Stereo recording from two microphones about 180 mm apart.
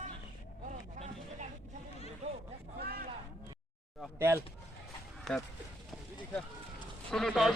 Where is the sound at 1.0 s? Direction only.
40° right (ahead or behind).